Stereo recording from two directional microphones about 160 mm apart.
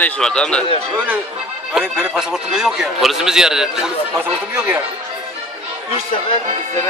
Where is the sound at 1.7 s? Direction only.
5° right (ahead or behind).